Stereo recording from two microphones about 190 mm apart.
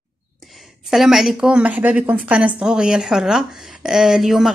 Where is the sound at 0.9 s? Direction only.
Centre (ahead or behind).